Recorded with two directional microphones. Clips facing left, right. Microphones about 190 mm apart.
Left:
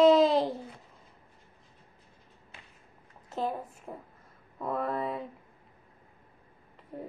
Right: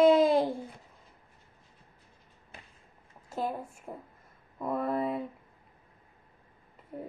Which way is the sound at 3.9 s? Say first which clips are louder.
Even; 10° right (ahead or behind).